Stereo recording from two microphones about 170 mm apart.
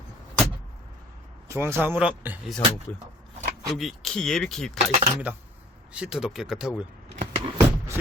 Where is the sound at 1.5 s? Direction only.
15° right (ahead or behind).